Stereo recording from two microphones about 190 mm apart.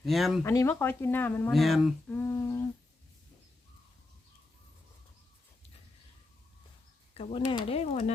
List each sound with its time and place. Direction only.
0.0 s speech: centre (ahead or behind)
0.4 s speech: 15° left (ahead or behind)
2.1 s humming: 15° left (ahead or behind)
7.1 s speech: 30° left (ahead or behind)